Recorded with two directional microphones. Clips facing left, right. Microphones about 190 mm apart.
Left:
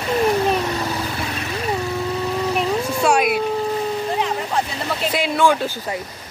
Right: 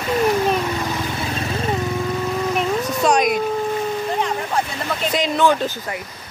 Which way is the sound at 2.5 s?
10° left (ahead or behind).